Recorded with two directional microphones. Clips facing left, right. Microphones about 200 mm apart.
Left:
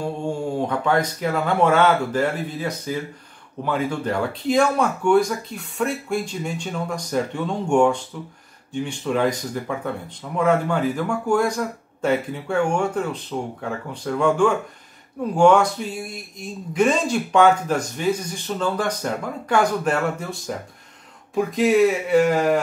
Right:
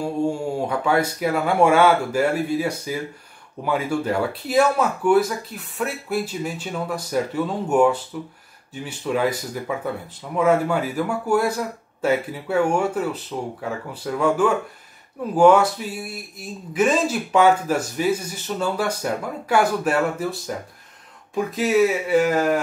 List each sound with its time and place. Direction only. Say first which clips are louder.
0.0 s speech: right 2 dB; 10° right (ahead or behind)